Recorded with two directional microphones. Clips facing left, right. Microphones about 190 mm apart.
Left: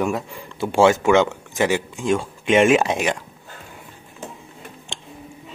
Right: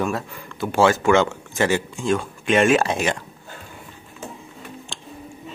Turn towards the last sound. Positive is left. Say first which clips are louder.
# left 1 dB
turn(degrees=25)  # may be behind; listen again after turning